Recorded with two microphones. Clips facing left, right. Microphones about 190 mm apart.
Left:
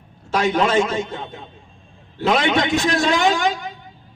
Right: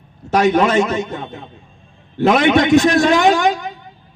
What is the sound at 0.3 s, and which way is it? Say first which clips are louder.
A man's voice: right 4 dB; 55° right (ahead or behind).